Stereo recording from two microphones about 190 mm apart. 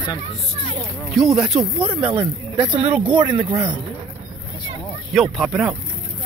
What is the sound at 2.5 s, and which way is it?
Speech, 25° right (ahead or behind).